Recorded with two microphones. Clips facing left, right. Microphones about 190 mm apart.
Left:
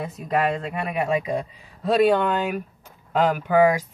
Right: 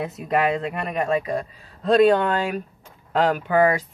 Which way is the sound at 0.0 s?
5° right (ahead or behind).